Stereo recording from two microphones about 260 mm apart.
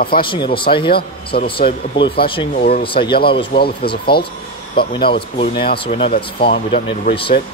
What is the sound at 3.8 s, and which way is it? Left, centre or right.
Speech, left.